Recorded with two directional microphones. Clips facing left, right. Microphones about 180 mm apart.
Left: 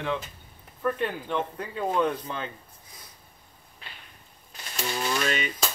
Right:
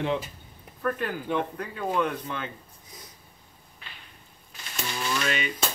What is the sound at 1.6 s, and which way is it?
Speech, 25° left (ahead or behind).